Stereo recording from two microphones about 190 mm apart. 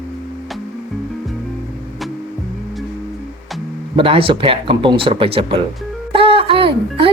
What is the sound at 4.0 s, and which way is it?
Speech, 30° right (ahead or behind).